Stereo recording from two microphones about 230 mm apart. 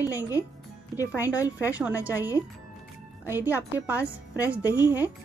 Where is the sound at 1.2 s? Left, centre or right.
Centre.